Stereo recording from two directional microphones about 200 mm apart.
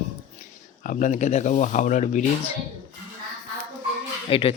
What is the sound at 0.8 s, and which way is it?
Speech, 40° left (ahead or behind).